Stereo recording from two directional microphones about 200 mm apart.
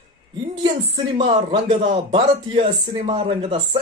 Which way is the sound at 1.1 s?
30° right (ahead or behind).